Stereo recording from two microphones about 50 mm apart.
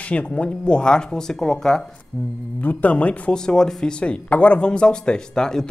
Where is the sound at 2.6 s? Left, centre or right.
Left.